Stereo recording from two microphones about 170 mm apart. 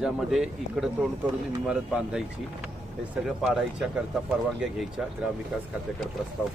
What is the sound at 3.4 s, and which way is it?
Speech, centre (ahead or behind).